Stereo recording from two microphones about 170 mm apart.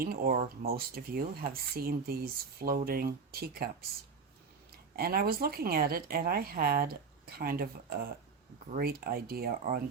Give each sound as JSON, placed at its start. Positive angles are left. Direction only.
{"t": 0.0, "sound": "speech", "side_deg": -60}
{"t": 4.9, "sound": "speech", "side_deg": -65}